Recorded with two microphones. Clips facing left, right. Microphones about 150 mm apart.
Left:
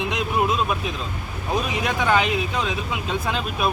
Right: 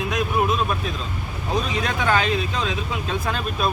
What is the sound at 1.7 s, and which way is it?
Speech, 15° left (ahead or behind).